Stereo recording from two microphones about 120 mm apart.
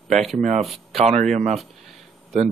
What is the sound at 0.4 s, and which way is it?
Speech, 80° right.